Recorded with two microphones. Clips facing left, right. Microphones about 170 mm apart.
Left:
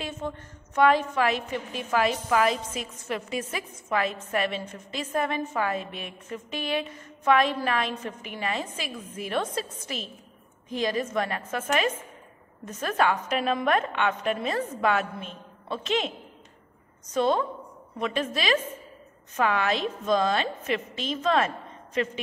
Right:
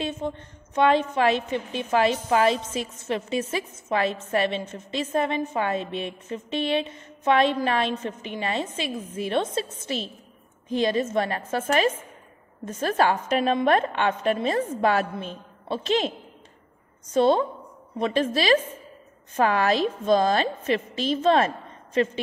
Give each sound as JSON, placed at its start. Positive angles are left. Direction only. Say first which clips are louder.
{"t": 0.0, "sound": "a woman's voice", "louder": "right 4 dB", "side_deg": -25}
{"t": 17.1, "sound": "a woman's voice", "louder": "right 4 dB", "side_deg": -30}